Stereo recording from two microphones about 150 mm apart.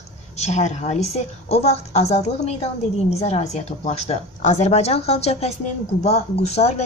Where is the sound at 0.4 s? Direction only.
50° left (ahead or behind).